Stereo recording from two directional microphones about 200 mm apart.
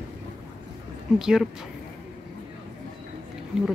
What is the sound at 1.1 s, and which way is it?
Speech, 5° right (ahead or behind).